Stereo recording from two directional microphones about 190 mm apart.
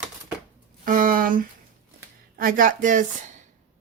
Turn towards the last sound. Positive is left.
turn(degrees=-45)  # may be behind; listen again after turning